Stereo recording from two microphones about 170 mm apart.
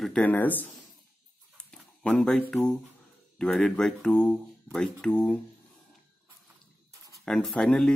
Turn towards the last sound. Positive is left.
turn(degrees=5)  # may be behind; listen again after turning